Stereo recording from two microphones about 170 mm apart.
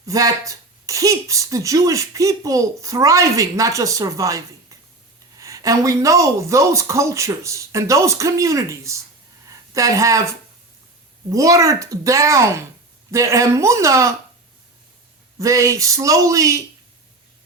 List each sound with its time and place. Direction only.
0.0 s speech: 20° right (ahead or behind)
9.5 s a sound: 20° right (ahead or behind)
11.3 s speech: 20° right (ahead or behind)
15.4 s speech: 20° right (ahead or behind)